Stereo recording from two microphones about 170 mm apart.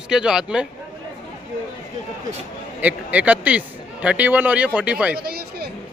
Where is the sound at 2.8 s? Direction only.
10° right (ahead or behind).